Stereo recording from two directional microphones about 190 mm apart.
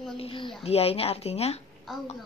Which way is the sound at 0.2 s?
30° left (ahead or behind).